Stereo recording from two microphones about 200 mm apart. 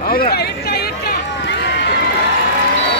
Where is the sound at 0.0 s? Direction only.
50° left (ahead or behind).